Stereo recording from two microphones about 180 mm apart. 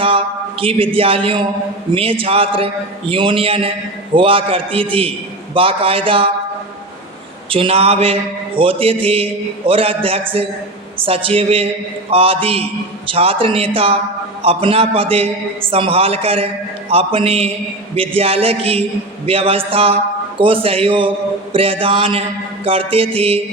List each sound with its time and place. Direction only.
0.0 s a man's voice: 30° right (ahead or behind)
7.5 s a man's voice: 30° right (ahead or behind)